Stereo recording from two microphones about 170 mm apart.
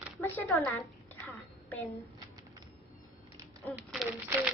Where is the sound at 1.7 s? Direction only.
15° left (ahead or behind).